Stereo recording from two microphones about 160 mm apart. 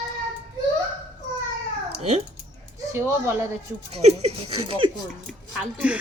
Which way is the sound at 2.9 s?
15° right (ahead or behind).